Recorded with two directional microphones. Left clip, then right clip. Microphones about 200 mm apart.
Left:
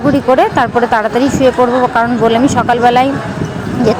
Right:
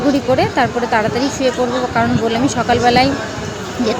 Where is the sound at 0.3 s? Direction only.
15° left (ahead or behind).